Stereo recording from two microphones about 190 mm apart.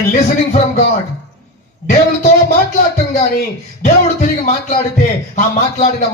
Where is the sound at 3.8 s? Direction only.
45° left (ahead or behind).